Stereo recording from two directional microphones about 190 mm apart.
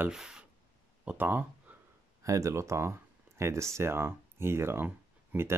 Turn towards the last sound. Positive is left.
turn(degrees=-10)  # may be behind; listen again after turning